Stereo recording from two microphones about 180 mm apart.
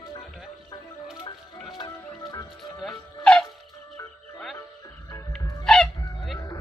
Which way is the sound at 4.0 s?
20° left (ahead or behind).